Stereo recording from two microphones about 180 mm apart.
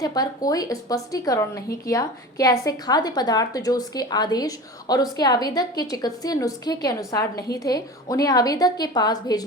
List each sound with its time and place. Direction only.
0.0 s a woman's voice: 20° left (ahead or behind)